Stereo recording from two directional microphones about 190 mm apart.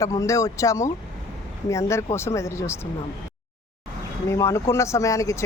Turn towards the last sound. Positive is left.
turn(degrees=15)  # may be behind; listen again after turning